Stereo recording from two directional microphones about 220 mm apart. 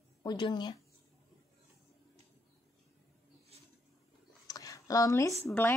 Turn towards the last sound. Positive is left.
turn(degrees=10)  # may be behind; listen again after turning